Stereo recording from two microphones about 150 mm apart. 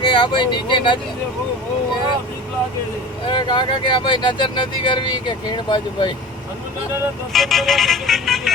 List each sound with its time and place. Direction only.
0.0 s speech: 35° left (ahead or behind)
3.2 s speech: 30° left (ahead or behind)
7.3 s vehicle: centre (ahead or behind)